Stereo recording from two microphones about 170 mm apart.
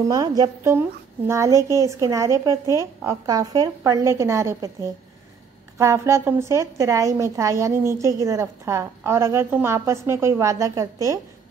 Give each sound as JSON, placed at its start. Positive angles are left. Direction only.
{"t": 0.1, "sound": "a woman's voice", "side_deg": -20}
{"t": 5.8, "sound": "a woman's voice", "side_deg": -15}